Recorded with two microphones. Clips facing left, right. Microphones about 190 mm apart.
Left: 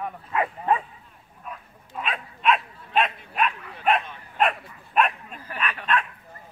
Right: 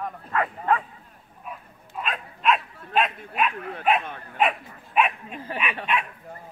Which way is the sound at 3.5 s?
55° right (ahead or behind).